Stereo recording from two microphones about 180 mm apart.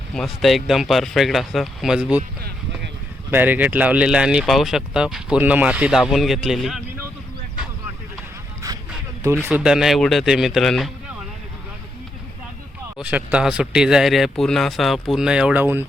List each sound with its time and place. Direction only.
0.1 s speech: centre (ahead or behind)
3.3 s speech: 10° right (ahead or behind)
8.6 s vehicle: 20° right (ahead or behind)
9.2 s speech: 15° right (ahead or behind)
13.0 s speech: 10° right (ahead or behind)